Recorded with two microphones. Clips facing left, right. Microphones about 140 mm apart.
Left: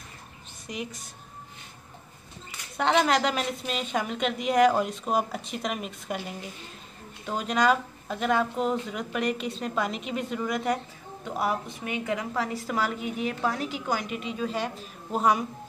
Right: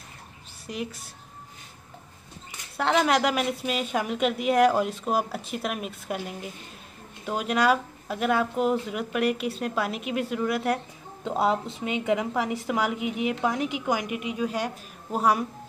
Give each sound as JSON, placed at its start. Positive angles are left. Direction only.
{"t": 0.7, "sound": "a woman's voice", "side_deg": 0}
{"t": 2.8, "sound": "a woman's voice", "side_deg": 0}
{"t": 11.2, "sound": "a woman's voice", "side_deg": -25}